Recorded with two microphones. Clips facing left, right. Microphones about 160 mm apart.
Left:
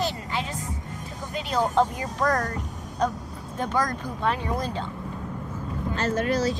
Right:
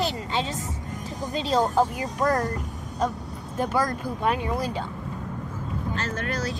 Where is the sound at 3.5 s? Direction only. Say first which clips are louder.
Right 1 dB; 10° right (ahead or behind).